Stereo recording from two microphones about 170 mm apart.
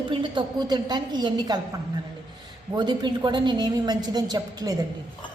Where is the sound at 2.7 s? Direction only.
25° right (ahead or behind).